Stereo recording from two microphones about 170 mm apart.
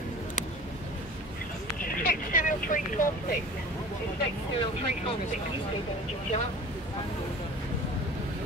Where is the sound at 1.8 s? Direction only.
50° left (ahead or behind).